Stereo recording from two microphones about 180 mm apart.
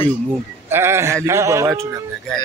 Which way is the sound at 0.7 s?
15° right (ahead or behind).